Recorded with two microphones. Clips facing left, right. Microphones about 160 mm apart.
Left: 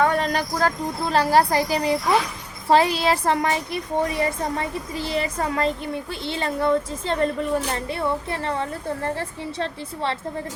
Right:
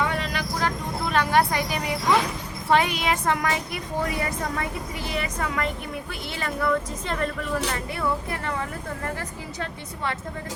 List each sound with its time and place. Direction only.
0.0 s a woman's voice: 45° left (ahead or behind); by 10.2 s 30° left (ahead or behind)